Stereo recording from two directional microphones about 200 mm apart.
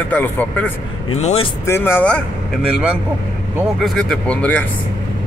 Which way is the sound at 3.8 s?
Centre (ahead or behind).